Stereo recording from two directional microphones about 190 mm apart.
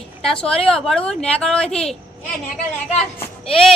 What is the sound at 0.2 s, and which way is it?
A woman's voice, 5° left (ahead or behind).